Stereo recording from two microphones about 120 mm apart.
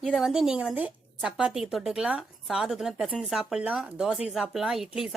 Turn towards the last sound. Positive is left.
turn(degrees=-5)  # may be behind; listen again after turning